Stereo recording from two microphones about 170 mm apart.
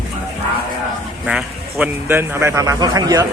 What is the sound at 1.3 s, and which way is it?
Speech, 5° right (ahead or behind).